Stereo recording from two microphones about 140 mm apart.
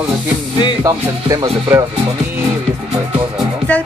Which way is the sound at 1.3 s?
20° right (ahead or behind).